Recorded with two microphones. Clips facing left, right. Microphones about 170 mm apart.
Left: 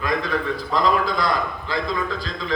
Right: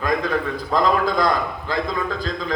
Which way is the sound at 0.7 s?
50° right (ahead or behind).